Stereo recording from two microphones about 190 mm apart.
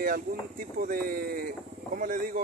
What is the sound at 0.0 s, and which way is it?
Speech, 50° right (ahead or behind).